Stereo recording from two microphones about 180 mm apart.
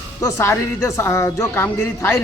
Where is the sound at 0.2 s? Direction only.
15° left (ahead or behind).